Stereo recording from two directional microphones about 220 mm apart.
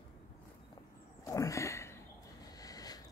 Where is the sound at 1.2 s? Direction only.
15° left (ahead or behind).